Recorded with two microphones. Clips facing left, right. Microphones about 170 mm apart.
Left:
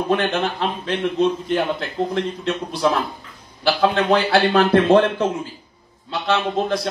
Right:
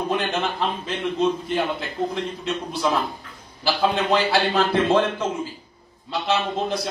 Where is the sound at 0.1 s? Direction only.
65° left (ahead or behind).